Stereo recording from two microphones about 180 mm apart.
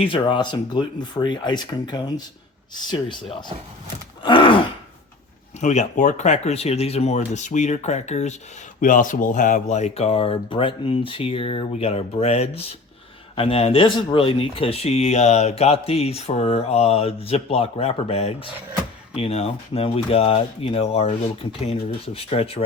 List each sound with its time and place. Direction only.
0.0 s speech: 25° left (ahead or behind)
4.2 s gasp: 25° left (ahead or behind)
5.5 s speech: 40° left (ahead or behind)